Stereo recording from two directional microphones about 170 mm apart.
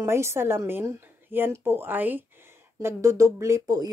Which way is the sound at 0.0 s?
15° right (ahead or behind).